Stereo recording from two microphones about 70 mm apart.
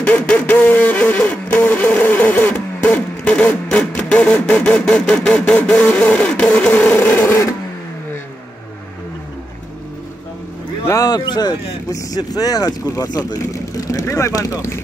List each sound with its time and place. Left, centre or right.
0.0 s printer: left
4.6 s music: centre
6.7 s printer: left
7.2 s a sound: left
11.1 s speech: left
11.9 s speech: left
13.5 s speech: left